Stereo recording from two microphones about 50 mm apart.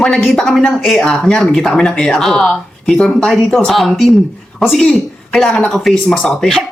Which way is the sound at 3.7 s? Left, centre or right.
Centre.